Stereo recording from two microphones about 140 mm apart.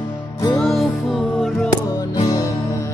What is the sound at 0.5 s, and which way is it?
Music, centre (ahead or behind).